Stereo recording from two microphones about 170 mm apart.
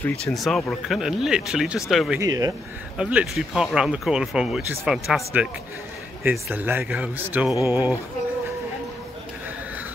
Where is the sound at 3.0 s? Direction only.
5° right (ahead or behind).